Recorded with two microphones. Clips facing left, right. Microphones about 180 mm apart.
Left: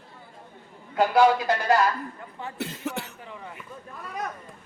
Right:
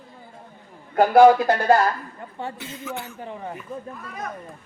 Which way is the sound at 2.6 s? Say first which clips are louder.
Left 1 dB; 70° left (ahead or behind).